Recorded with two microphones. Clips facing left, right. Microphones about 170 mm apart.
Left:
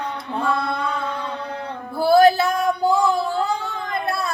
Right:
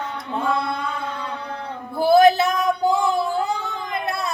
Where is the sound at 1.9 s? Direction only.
20° right (ahead or behind).